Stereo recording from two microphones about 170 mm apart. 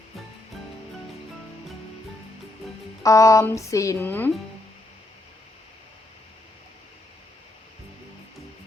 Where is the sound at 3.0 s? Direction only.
20° left (ahead or behind).